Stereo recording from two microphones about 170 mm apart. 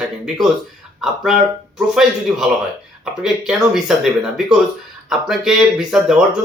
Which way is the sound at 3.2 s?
Centre (ahead or behind).